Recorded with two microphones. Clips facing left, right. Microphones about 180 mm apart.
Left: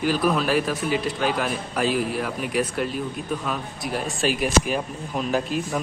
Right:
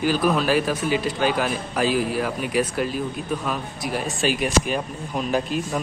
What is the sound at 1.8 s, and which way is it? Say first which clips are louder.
Speech: right 2 dB; centre (ahead or behind).